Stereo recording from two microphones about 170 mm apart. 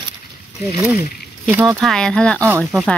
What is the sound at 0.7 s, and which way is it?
Speech, 5° right (ahead or behind).